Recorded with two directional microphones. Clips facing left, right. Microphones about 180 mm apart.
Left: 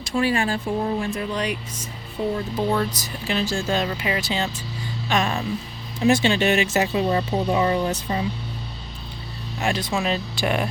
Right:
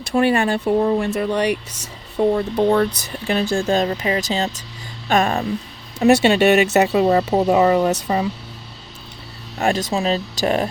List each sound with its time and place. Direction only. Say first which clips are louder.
0.1 s speech: right 5 dB; 60° right (ahead or behind)
3.2 s speech: right 5 dB; 55° right (ahead or behind); by 4.6 s 40° right (ahead or behind)
5.0 s speech: right 5 dB; 55° right (ahead or behind)
6.1 s speech: right 5 dB; 70° right (ahead or behind)
9.6 s speech: right 5 dB; 40° right (ahead or behind)